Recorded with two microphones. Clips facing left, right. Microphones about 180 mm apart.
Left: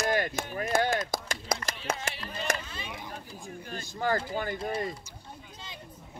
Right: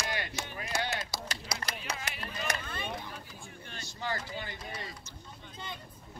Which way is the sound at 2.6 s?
55° right (ahead or behind).